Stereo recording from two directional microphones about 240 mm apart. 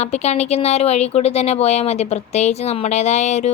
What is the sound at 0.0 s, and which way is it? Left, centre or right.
Speech, left.